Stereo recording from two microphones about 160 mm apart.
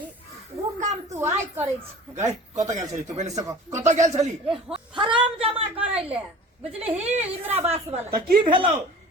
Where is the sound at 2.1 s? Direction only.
45° right (ahead or behind).